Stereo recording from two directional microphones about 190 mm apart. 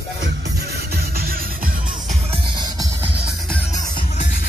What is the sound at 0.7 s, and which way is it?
Music, 55° right (ahead or behind).